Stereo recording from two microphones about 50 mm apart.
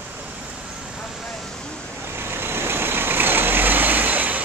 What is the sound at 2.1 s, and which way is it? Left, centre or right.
Vehicle, right.